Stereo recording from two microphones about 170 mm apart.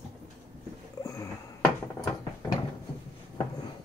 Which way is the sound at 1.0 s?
20° left (ahead or behind).